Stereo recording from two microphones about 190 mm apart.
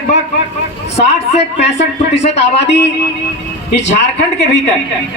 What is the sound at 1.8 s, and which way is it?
Speech, 65° left (ahead or behind).